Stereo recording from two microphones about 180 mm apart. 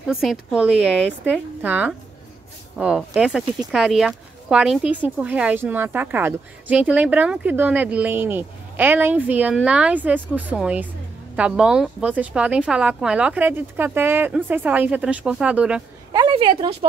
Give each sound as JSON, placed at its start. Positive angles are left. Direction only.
{"t": 0.0, "sound": "speech", "side_deg": 0}
{"t": 16.1, "sound": "a woman's voice", "side_deg": -25}